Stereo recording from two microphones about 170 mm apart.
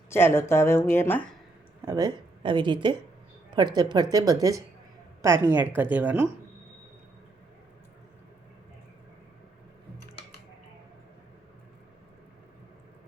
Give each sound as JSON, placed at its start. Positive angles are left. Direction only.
{"t": 0.1, "sound": "a woman's voice", "side_deg": 15}
{"t": 1.8, "sound": "a woman's voice", "side_deg": -20}